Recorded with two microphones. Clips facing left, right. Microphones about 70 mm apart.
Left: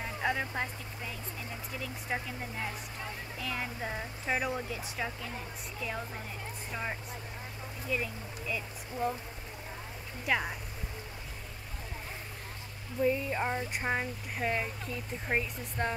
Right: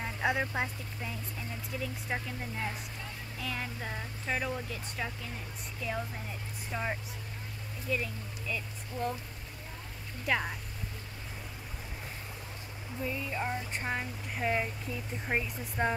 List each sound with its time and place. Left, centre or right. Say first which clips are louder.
0.0 s speech: right 1 dB; centre
1.8 s speech: even; centre
10.2 s speech: even; centre
13.0 s speech: left 5 dB; centre
13.7 s speech: left 2 dB; centre
14.4 s speech: right 1 dB; centre